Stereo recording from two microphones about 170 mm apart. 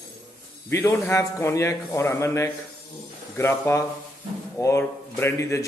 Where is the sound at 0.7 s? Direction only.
15° left (ahead or behind).